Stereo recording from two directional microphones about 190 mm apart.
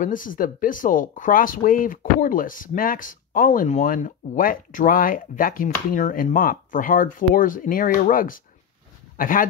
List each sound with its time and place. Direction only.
0.0 s speech: 45° left (ahead or behind)